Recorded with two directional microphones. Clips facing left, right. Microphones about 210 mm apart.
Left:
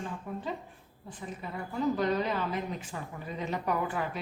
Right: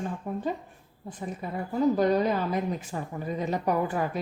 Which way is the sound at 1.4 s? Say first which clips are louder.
Right 6 dB; 45° right (ahead or behind).